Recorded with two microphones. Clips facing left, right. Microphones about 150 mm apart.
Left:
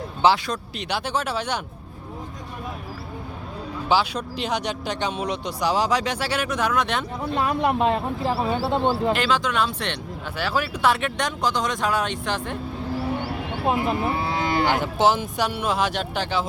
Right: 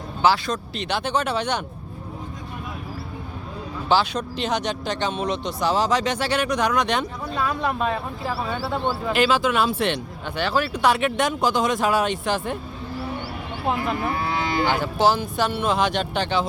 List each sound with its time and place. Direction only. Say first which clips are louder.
0.4 s speech: right 2 dB; 10° left (ahead or behind)
3.8 s speech: right 1 dB; 10° left (ahead or behind)
7.3 s speech: left 3 dB; 25° left (ahead or behind)
9.1 s speech: right 3 dB; 5° right (ahead or behind)
10.3 s speech: right 3 dB; 5° left (ahead or behind)
13.7 s cattle: left 1 dB; 20° left (ahead or behind)
14.7 s speech: right 1 dB; 20° left (ahead or behind)